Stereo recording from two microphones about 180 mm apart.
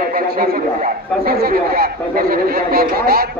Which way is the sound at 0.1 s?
55° right (ahead or behind).